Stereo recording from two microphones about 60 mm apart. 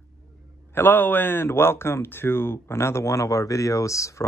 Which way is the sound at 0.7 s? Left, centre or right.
Left.